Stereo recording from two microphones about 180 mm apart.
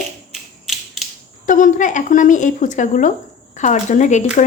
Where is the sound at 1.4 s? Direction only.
45° left (ahead or behind).